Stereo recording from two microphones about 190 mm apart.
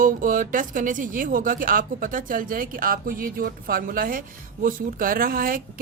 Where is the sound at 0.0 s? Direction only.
45° right (ahead or behind).